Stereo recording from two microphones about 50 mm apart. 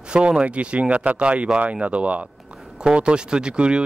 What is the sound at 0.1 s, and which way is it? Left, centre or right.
Speech, right.